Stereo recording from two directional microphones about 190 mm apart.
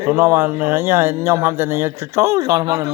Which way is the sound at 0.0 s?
10° right (ahead or behind).